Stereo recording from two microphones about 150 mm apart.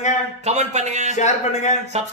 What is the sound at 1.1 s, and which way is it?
Speech, 50° left (ahead or behind).